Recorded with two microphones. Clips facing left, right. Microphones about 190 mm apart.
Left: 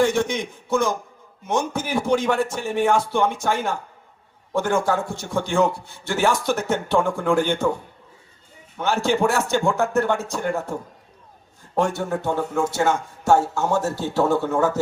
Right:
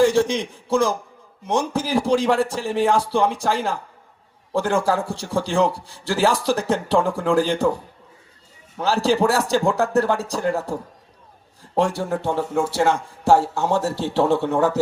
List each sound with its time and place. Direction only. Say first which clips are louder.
0.0 s a man's voice: right 3 dB; 30° right (ahead or behind)
8.8 s a man's voice: right 2 dB; 35° right (ahead or behind)